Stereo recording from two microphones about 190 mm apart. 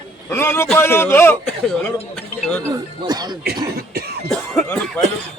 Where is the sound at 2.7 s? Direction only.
20° right (ahead or behind).